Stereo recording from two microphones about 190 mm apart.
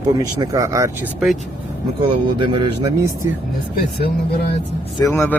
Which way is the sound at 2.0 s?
25° right (ahead or behind).